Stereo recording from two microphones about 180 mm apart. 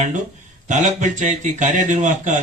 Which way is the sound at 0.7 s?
45° right (ahead or behind).